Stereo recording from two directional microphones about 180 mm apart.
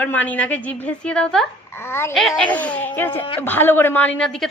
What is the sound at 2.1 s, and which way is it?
A woman's voice, centre (ahead or behind).